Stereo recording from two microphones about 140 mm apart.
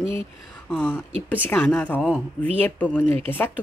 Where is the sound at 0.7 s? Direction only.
10° left (ahead or behind).